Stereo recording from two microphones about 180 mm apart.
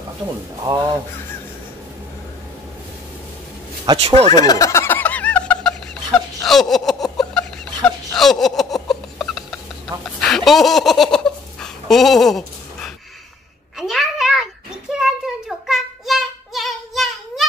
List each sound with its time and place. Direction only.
3.8 s speech: 30° right (ahead or behind)
4.3 s a sound: 20° left (ahead or behind); by 12.9 s centre (ahead or behind)
13.7 s cat: centre (ahead or behind)
14.9 s child singing: 5° right (ahead or behind)